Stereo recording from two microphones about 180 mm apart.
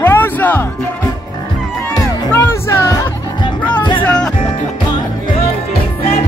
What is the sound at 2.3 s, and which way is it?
Music, 10° left (ahead or behind).